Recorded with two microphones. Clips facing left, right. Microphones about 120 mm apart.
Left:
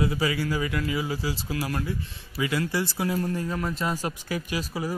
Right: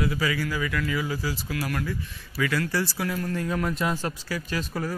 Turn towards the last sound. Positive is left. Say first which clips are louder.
# even
turn(degrees=10)  # may be behind; listen again after turning